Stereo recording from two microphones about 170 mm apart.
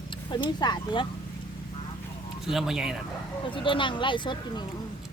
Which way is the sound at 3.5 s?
30° left (ahead or behind).